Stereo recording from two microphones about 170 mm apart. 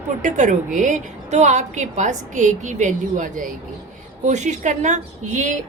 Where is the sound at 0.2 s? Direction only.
45° right (ahead or behind).